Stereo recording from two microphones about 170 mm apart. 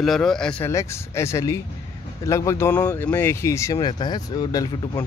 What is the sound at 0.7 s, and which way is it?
Speech, 15° left (ahead or behind).